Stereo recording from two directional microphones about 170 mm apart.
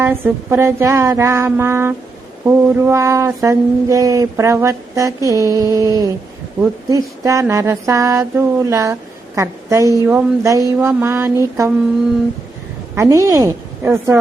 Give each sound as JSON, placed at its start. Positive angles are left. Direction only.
{"t": 0.0, "sound": "mantra", "side_deg": -15}
{"t": 13.0, "sound": "mantra", "side_deg": -20}